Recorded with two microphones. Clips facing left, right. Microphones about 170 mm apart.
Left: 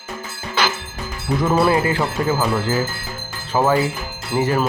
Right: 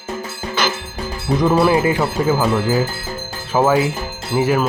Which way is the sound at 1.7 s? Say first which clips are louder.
Right 3 dB; 20° right (ahead or behind).